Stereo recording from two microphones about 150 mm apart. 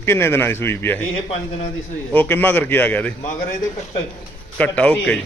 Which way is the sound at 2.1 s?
10° left (ahead or behind).